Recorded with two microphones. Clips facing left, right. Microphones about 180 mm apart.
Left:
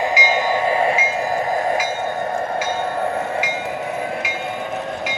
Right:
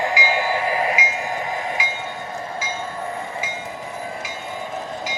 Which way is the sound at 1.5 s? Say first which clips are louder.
Left 7 dB; 45° left (ahead or behind).